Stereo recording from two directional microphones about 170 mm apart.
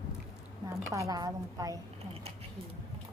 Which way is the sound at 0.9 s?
20° right (ahead or behind).